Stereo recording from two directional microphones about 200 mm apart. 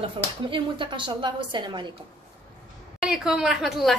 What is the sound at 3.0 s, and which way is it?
Speech, centre (ahead or behind).